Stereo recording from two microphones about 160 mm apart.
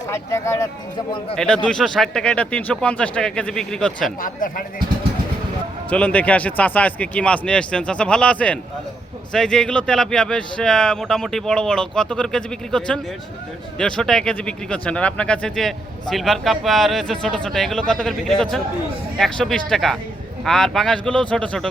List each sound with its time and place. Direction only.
0.1 s speech: 20° left (ahead or behind)
0.9 s a man's voice: 30° left (ahead or behind)
1.4 s speech: 5° left (ahead or behind)
4.2 s speech: 60° left (ahead or behind)
5.9 s speech: 10° left (ahead or behind)